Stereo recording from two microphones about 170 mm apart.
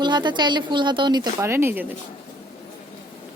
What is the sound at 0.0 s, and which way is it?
Speech, 25° right (ahead or behind).